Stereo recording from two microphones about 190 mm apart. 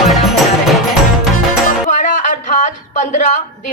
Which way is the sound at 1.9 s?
40° left (ahead or behind).